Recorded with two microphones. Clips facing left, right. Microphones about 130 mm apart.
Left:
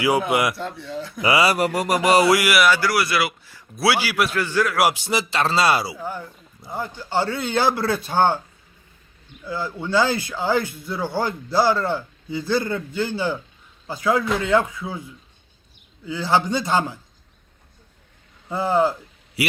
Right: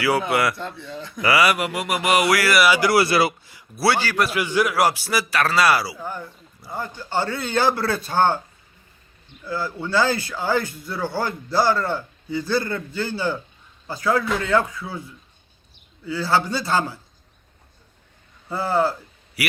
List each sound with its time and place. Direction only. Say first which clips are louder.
0.0 s a man's voice: left 1 dB; 20° left (ahead or behind)
1.2 s speech: even; 25° left (ahead or behind)
1.5 s a sound: left 4 dB; 40° left (ahead or behind)
2.6 s a man's voice: right 1 dB; 10° right (ahead or behind)
2.9 s speech: right 4 dB; 30° right (ahead or behind)
3.8 s a man's voice: even; 5° left (ahead or behind)
4.3 s a man's voice: right 1 dB; 15° right (ahead or behind)
4.9 s speech: even; 20° left (ahead or behind)
6.0 s a man's voice: left 1 dB; 10° left (ahead or behind)
9.4 s a man's voice: right 1 dB; 15° left (ahead or behind)
18.4 s a man's voice: left 2 dB; 15° left (ahead or behind)
19.4 s a man's voice: left 3 dB; 25° left (ahead or behind)